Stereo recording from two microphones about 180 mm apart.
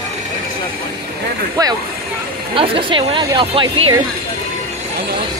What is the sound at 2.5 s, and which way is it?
A woman's voice, 30° right (ahead or behind).